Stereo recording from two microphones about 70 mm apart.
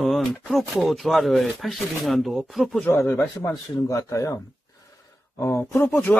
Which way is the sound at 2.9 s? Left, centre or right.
Left.